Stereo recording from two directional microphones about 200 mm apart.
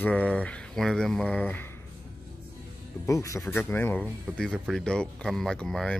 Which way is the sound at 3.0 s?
15° left (ahead or behind).